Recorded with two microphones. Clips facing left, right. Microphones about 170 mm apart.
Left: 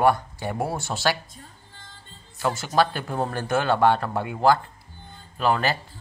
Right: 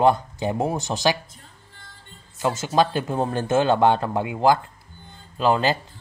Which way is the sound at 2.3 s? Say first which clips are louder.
Right 2 dB; 20° right (ahead or behind).